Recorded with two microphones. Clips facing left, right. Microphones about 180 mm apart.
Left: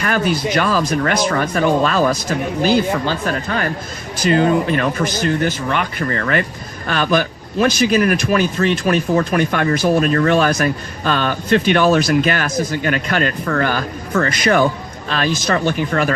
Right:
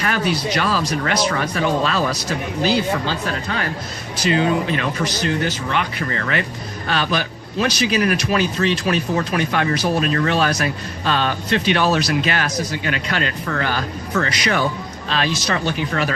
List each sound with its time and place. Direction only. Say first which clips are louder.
0.0 s a man's voice: left 3 dB; 50° left (ahead or behind)